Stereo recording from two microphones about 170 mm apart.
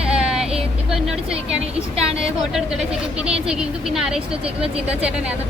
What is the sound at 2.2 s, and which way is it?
A woman's voice, 5° right (ahead or behind).